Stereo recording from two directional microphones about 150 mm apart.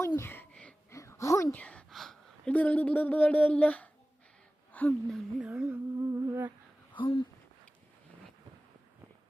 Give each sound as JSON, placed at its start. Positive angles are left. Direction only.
{"t": 0.2, "sound": "a sound", "side_deg": 15}
{"t": 0.9, "sound": "a woman's voice", "side_deg": 20}
{"t": 4.7, "sound": "humming", "side_deg": 10}
{"t": 6.9, "sound": "speech", "side_deg": 35}